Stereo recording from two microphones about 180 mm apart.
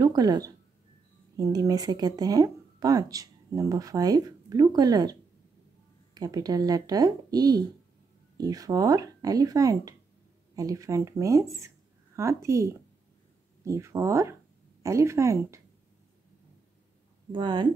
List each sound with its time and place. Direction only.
0.0 s speech: 20° right (ahead or behind)
6.1 s speech: 20° right (ahead or behind)
17.3 s speech: 25° right (ahead or behind)